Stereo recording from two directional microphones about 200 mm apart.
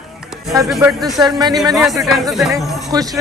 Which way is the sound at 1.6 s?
Centre (ahead or behind).